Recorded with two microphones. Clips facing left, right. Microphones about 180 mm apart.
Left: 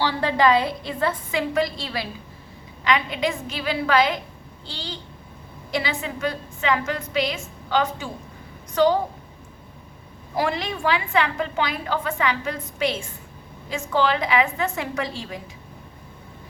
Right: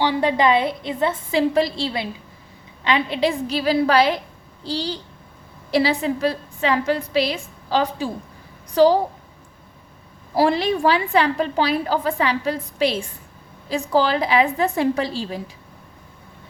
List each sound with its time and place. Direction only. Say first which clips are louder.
0.0 s a woman's voice: right 2 dB; 20° right (ahead or behind); by 9.0 s 35° right (ahead or behind)
10.3 s a woman's voice: right 7 dB; 35° right (ahead or behind)